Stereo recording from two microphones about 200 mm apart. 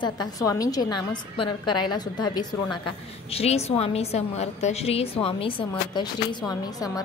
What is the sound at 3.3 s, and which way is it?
A woman's voice, 30° left (ahead or behind).